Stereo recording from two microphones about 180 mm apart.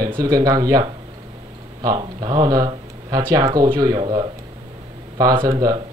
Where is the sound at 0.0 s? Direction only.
20° right (ahead or behind).